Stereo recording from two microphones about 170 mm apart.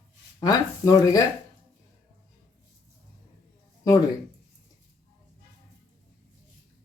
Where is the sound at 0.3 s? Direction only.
20° left (ahead or behind).